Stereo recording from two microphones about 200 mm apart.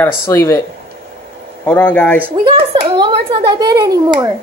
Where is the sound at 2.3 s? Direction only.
25° right (ahead or behind).